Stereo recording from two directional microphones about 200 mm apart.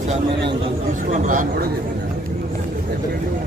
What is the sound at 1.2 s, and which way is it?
Speech, 40° right (ahead or behind).